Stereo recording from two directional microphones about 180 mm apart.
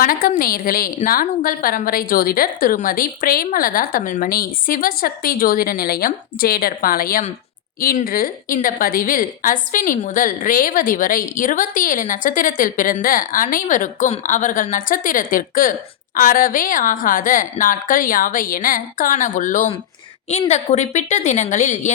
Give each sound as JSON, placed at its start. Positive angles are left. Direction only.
{"t": 0.0, "sound": "a woman's voice", "side_deg": 50}